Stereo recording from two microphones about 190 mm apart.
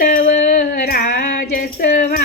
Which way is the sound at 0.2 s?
40° left (ahead or behind).